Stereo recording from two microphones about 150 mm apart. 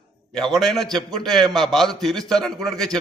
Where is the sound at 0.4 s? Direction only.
Centre (ahead or behind).